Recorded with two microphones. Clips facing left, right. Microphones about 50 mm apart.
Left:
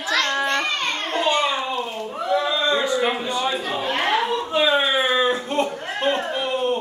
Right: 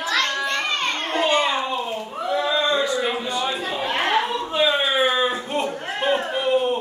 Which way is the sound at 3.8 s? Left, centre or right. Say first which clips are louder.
Right 1 dB; centre.